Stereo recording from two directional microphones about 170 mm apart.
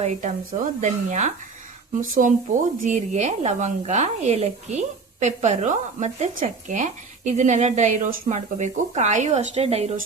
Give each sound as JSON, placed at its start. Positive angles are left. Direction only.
{"t": 0.0, "sound": "speech", "side_deg": -45}